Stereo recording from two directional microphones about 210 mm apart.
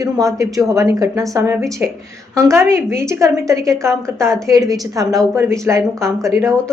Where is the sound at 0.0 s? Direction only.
15° right (ahead or behind).